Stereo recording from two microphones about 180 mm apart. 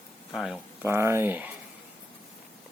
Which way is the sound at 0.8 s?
15° right (ahead or behind).